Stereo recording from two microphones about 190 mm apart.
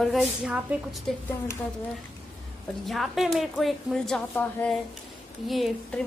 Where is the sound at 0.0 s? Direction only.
5° right (ahead or behind).